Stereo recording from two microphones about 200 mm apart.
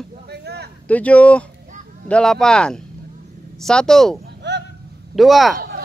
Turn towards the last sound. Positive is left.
turn(degrees=0)  # may be behind; listen again after turning